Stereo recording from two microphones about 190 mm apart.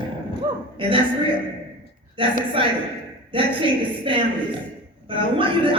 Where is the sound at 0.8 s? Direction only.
25° right (ahead or behind).